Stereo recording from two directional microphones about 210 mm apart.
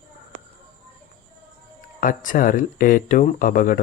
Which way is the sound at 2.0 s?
40° left (ahead or behind).